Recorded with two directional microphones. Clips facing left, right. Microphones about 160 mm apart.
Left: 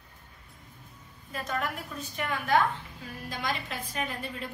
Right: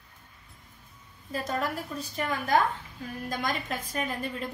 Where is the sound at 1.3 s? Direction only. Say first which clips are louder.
Right 3 dB; 35° right (ahead or behind).